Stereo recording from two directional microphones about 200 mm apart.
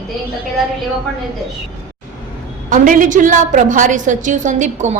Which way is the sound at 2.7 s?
40° right (ahead or behind).